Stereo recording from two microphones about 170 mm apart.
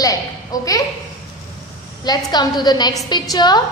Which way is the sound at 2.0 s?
25° left (ahead or behind).